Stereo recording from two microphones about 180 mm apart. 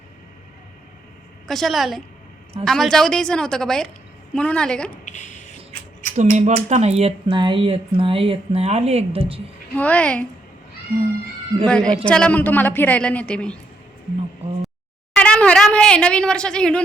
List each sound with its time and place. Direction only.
1.5 s a woman's voice: centre (ahead or behind)
5.0 s a sound: 45° left (ahead or behind)
6.1 s speech: 40° right (ahead or behind)
9.7 s a woman's voice: 10° left (ahead or behind)
11.6 s a woman's voice: 5° left (ahead or behind)
15.1 s a sound: 5° left (ahead or behind)